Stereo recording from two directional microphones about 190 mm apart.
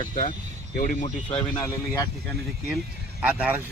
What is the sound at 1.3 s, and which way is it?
Speech, 30° left (ahead or behind).